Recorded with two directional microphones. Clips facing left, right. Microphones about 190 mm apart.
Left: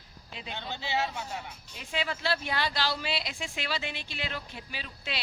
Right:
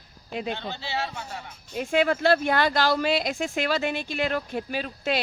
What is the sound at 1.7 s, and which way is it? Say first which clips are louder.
Speech: right 12 dB; 50° right (ahead or behind).